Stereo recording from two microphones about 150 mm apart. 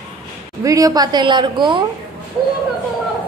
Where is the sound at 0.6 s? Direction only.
25° right (ahead or behind).